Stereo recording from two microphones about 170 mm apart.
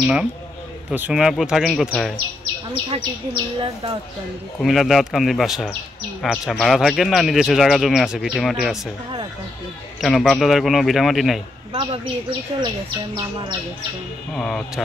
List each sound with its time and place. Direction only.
0.0 s speech: 5° right (ahead or behind)
4.6 s speech: centre (ahead or behind)
9.9 s speech: centre (ahead or behind)
11.7 s speech: 30° right (ahead or behind)
14.3 s speech: 5° left (ahead or behind)